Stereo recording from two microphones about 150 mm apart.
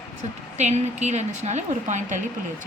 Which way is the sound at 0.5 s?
50° right (ahead or behind).